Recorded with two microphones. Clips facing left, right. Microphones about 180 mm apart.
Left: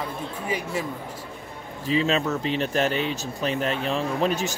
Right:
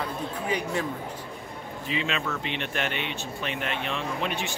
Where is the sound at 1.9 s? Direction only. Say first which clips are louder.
Left 7 dB; 40° left (ahead or behind).